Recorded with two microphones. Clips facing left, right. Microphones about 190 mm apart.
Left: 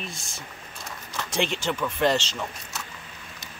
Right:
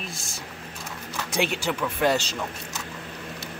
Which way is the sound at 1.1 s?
10° right (ahead or behind).